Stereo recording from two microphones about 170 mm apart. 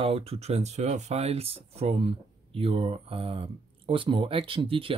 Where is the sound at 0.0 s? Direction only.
35° right (ahead or behind).